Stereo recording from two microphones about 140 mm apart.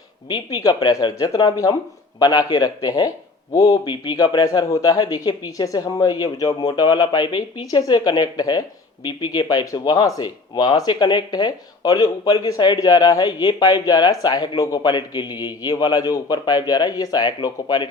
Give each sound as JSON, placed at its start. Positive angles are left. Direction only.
{"t": 0.3, "sound": "speech", "side_deg": 30}